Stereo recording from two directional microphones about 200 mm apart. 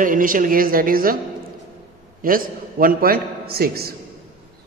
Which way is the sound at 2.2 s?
45° right (ahead or behind).